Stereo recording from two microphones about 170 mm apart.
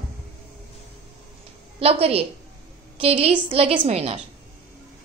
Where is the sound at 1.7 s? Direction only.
35° right (ahead or behind).